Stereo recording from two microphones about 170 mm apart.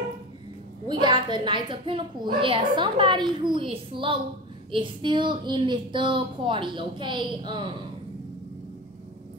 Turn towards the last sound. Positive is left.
turn(degrees=-25)  # may be behind; listen again after turning